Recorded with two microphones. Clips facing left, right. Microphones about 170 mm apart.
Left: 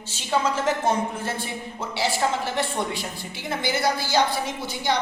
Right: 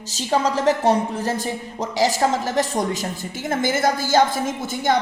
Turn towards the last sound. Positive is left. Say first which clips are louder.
# right 5 dB
turn(degrees=-45)  # may be behind; listen again after turning